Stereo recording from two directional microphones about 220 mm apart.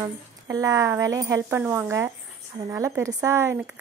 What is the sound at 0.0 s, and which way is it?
Speech, 15° right (ahead or behind).